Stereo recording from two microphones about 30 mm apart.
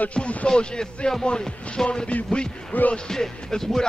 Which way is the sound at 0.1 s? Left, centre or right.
Left.